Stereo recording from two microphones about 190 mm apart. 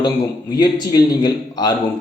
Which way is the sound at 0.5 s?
20° left (ahead or behind).